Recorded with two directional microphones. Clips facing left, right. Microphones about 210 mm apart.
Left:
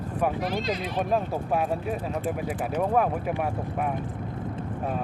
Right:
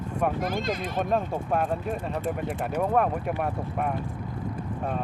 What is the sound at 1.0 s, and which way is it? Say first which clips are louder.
Speech: even; 5° left (ahead or behind).